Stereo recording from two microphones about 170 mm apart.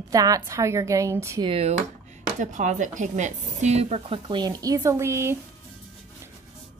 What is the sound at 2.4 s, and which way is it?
A woman's voice, 45° right (ahead or behind).